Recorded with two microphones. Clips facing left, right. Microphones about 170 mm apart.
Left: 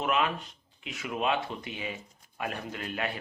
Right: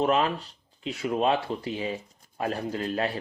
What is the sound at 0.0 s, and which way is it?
Speech, 35° right (ahead or behind).